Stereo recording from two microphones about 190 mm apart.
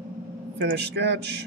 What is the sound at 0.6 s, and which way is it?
Speech, 60° right (ahead or behind).